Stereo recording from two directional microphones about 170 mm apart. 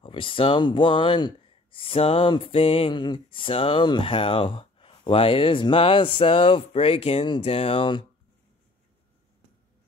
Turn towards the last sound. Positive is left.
turn(degrees=30)  # may be behind; listen again after turning